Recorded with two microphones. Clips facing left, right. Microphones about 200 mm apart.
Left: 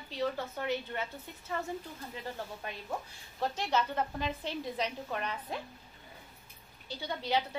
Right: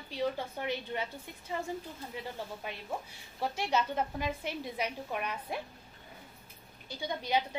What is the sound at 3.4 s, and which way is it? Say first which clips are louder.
A woman's voice: even; 10° right (ahead or behind).